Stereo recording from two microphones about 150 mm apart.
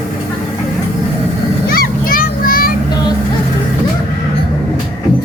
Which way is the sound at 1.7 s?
85° left.